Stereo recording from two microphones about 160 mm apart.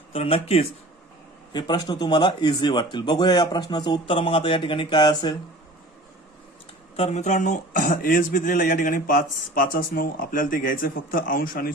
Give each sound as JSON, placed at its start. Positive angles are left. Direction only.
{"t": 0.1, "sound": "speech", "side_deg": 35}
{"t": 1.5, "sound": "speech", "side_deg": 25}
{"t": 6.9, "sound": "speech", "side_deg": 40}